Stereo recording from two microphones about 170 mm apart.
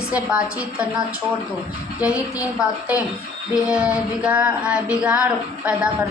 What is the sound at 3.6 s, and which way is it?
Speech, 5° right (ahead or behind).